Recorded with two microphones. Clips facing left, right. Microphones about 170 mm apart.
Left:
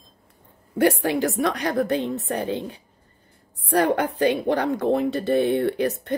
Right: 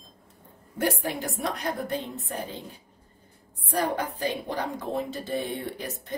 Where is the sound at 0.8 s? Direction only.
80° left.